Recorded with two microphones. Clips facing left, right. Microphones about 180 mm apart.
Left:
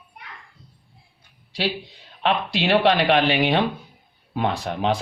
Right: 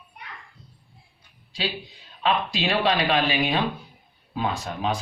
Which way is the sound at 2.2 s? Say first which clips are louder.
Left 2 dB; 65° left (ahead or behind).